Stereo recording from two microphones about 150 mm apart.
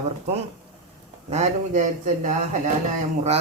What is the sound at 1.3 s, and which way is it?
Speech, 50° right (ahead or behind).